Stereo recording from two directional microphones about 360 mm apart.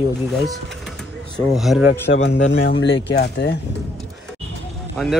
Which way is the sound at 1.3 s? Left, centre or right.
Centre.